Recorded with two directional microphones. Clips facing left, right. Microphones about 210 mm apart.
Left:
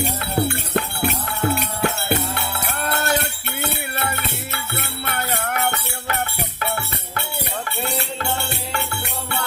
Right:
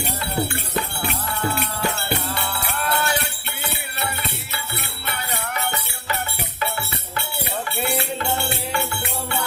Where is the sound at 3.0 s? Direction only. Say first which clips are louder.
Left 3 dB; 45° left (ahead or behind).